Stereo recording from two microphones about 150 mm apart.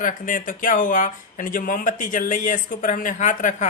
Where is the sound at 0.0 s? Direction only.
60° left (ahead or behind).